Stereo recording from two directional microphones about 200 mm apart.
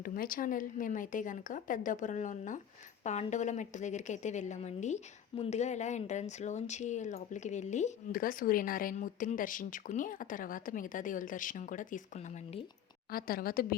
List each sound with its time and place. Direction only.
0.0 s speech: 45° left (ahead or behind)
13.1 s speech: 45° left (ahead or behind)